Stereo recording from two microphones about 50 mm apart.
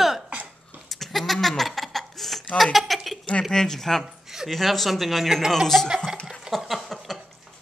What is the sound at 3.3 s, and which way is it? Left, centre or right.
Speech, centre.